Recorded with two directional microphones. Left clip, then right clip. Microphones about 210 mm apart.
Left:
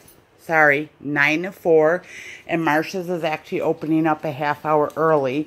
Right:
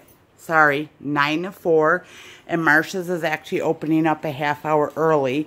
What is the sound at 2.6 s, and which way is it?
Speech, 5° right (ahead or behind).